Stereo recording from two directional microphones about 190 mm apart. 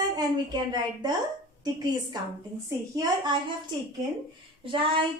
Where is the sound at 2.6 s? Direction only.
20° right (ahead or behind).